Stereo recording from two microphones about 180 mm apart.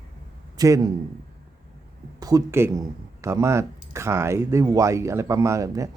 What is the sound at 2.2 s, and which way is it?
Speech, 20° right (ahead or behind).